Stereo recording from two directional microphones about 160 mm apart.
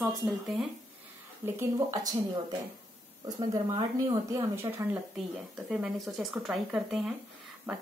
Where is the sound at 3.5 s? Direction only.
25° right (ahead or behind).